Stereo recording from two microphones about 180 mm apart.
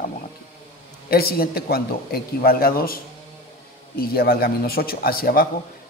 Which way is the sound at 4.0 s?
55° left (ahead or behind).